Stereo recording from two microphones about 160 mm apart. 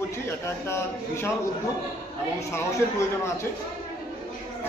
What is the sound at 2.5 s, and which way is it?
Speech, 15° left (ahead or behind).